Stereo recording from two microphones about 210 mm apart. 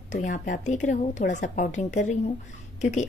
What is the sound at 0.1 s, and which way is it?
A woman's voice, 40° left (ahead or behind).